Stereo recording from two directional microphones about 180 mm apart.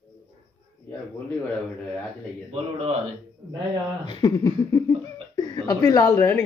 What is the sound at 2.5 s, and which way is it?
Speech, 35° right (ahead or behind).